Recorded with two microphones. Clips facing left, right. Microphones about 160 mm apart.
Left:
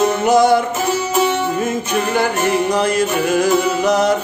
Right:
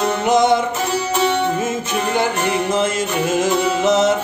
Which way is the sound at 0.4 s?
20° right (ahead or behind).